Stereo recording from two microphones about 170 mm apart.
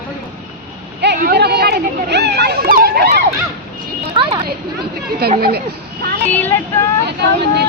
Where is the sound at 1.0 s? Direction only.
65° right (ahead or behind).